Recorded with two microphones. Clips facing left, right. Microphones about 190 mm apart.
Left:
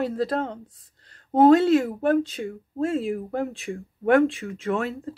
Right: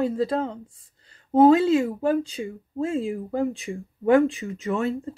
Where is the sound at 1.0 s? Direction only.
70° left (ahead or behind).